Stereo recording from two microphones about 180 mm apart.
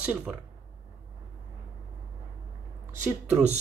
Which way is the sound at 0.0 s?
5° right (ahead or behind).